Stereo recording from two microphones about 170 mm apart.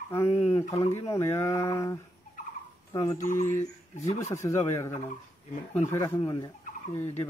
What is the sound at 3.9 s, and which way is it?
Speech, 40° left (ahead or behind).